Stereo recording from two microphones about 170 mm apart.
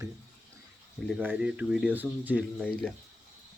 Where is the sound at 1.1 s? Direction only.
5° right (ahead or behind).